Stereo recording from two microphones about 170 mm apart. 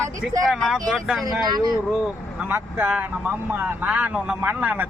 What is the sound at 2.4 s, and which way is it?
A man's voice, 10° right (ahead or behind).